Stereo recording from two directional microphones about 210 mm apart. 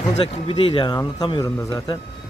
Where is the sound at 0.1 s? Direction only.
25° left (ahead or behind).